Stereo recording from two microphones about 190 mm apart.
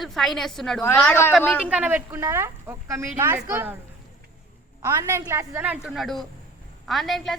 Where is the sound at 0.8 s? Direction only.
15° left (ahead or behind).